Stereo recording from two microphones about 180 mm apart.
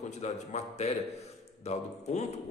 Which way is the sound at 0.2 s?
40° left (ahead or behind).